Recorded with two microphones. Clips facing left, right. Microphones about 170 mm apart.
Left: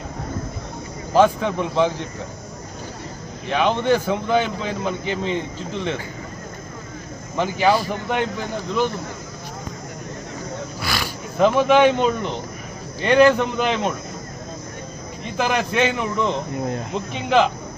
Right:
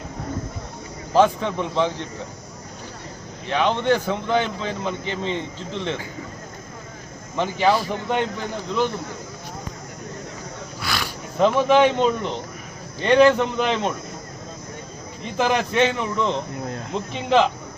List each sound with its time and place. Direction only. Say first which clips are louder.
1.1 s speech: left 1 dB; 5° left (ahead or behind)
3.4 s speech: left 1 dB; 10° left (ahead or behind)
7.3 s a man's voice: left 1 dB; 5° left (ahead or behind)
10.8 s a man's voice: even; 5° left (ahead or behind)
15.4 s a man's voice: right 1 dB; centre (ahead or behind)
16.6 s speech: left 5 dB; 20° left (ahead or behind)
16.9 s a man's voice: right 1 dB; centre (ahead or behind)